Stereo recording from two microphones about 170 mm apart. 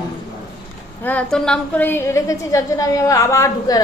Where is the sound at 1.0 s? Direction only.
10° left (ahead or behind).